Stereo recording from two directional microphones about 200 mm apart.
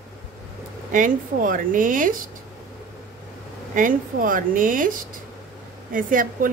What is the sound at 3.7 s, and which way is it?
Speech, 40° right (ahead or behind).